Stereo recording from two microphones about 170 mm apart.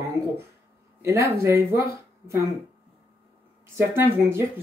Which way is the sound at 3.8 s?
15° right (ahead or behind).